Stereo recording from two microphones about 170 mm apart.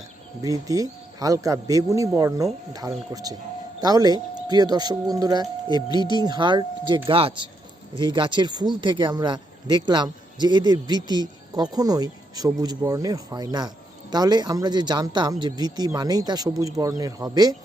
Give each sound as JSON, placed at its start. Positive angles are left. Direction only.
{"t": 0.4, "sound": "speech", "side_deg": -20}
{"t": 5.9, "sound": "speech", "side_deg": 25}
{"t": 6.1, "sound": "speech", "side_deg": -25}